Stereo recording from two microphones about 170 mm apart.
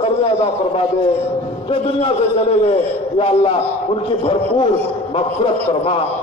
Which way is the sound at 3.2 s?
35° left (ahead or behind).